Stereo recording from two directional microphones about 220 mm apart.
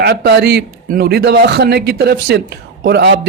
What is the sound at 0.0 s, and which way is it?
A man's voice, 45° right (ahead or behind).